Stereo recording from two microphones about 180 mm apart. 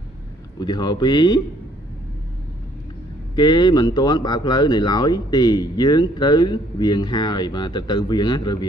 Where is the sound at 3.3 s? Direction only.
25° left (ahead or behind).